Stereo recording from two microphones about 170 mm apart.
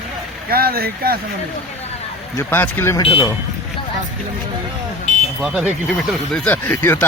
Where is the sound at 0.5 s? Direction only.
60° right (ahead or behind).